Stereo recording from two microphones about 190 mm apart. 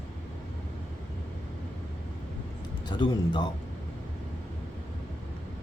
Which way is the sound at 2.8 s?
25° left (ahead or behind).